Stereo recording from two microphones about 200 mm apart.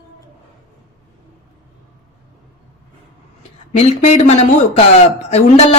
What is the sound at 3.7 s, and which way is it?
Speech, 35° left (ahead or behind).